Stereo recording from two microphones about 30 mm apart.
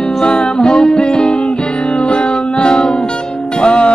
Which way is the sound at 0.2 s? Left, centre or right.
Left.